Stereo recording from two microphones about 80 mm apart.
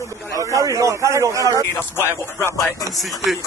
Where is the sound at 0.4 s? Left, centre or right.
Right.